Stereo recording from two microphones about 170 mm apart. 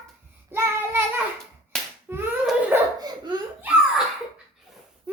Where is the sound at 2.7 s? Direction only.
10° right (ahead or behind).